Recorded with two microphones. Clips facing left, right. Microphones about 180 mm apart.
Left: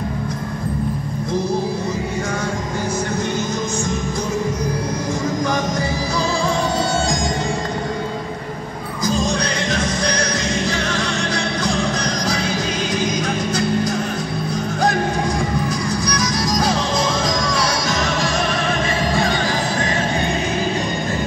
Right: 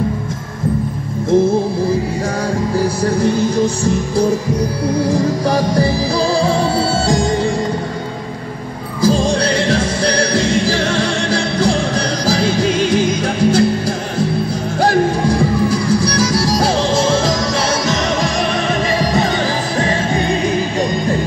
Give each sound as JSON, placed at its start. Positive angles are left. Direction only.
{"t": 3.2, "sound": "music", "side_deg": -30}
{"t": 9.0, "sound": "music", "side_deg": -30}